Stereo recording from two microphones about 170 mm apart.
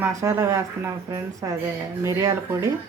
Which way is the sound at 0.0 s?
15° right (ahead or behind).